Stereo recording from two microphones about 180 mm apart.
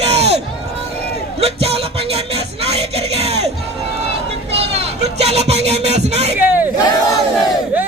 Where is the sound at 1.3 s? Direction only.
35° right (ahead or behind).